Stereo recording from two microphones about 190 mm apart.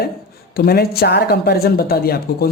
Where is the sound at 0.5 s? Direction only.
55° left (ahead or behind).